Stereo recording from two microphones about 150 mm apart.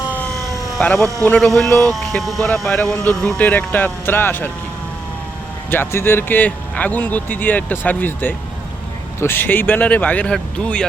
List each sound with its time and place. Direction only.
0.8 s speech: 5° left (ahead or behind)
5.7 s speech: 15° left (ahead or behind)